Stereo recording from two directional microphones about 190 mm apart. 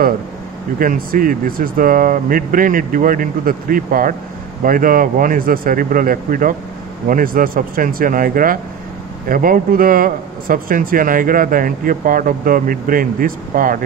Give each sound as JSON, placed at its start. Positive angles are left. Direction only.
{"t": 0.7, "sound": "speech", "side_deg": -50}